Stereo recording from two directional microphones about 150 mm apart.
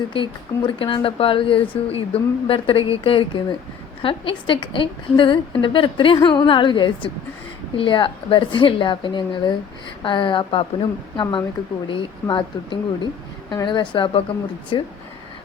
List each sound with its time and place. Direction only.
0.1 s speech: 35° left (ahead or behind)